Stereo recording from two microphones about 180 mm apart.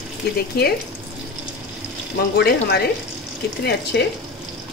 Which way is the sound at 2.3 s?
65° left (ahead or behind).